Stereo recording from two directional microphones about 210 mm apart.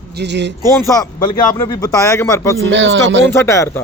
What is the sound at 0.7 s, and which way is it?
Speech, 15° left (ahead or behind).